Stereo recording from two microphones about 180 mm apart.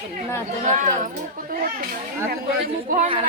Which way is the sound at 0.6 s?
45° right (ahead or behind).